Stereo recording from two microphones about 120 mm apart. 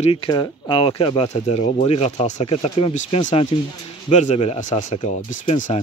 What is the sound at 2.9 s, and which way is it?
Speech, 90° left.